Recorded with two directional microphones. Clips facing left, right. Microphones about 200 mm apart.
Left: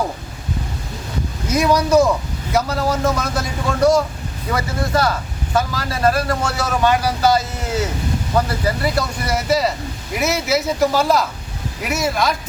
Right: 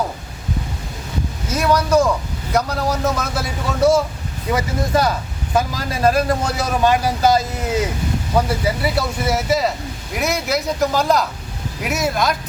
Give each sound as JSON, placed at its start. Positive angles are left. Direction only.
{"t": 1.5, "sound": "a man's voice", "side_deg": 10}
{"t": 8.6, "sound": "a man's voice", "side_deg": -5}